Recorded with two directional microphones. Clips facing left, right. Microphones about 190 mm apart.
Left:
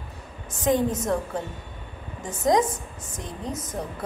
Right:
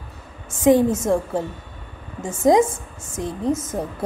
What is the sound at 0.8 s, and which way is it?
Speech, 25° right (ahead or behind).